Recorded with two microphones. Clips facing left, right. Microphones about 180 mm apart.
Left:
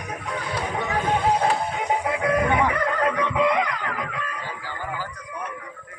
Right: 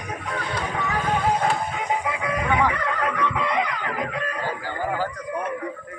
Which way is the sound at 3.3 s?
5° left (ahead or behind).